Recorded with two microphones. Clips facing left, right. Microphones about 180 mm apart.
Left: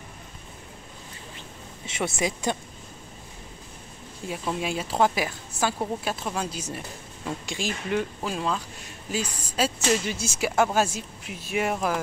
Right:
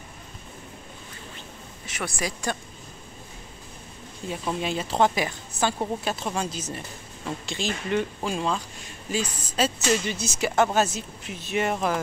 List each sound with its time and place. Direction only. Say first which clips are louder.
1.9 s speech: left 4 dB; 25° left (ahead or behind)
4.3 s speech: right 1 dB; 5° left (ahead or behind)